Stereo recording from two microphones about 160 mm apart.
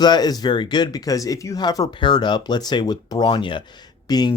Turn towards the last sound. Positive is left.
turn(degrees=25)  # may be behind; listen again after turning